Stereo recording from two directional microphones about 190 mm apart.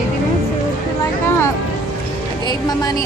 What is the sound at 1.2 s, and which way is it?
Music, 10° left (ahead or behind).